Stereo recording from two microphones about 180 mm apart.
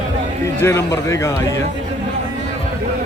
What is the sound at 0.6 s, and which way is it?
Speech, 15° left (ahead or behind).